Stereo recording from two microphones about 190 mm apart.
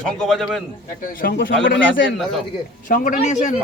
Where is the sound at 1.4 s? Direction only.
75° left (ahead or behind).